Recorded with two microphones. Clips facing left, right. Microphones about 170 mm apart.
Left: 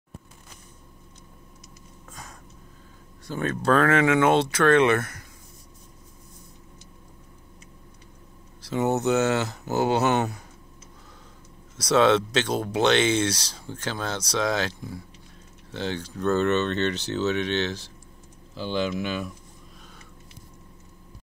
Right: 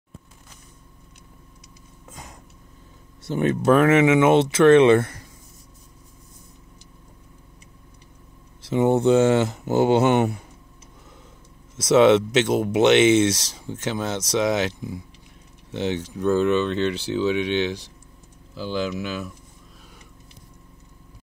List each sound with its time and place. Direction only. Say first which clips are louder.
2.0 s a sound: right 2 dB; 20° right (ahead or behind)
3.3 s speech: right 5 dB; 20° right (ahead or behind)
8.6 s speech: right 5 dB; 25° right (ahead or behind)
11.7 s speech: right 5 dB; 20° right (ahead or behind)
18.5 s speech: right 1 dB; 5° right (ahead or behind)